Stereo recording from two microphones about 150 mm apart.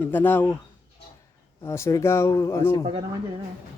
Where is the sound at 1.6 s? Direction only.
20° left (ahead or behind).